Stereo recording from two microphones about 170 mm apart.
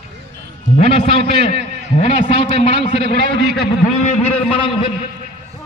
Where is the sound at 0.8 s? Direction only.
35° left (ahead or behind).